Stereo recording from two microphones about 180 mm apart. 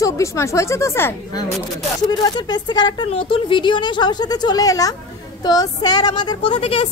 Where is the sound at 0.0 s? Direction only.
15° left (ahead or behind).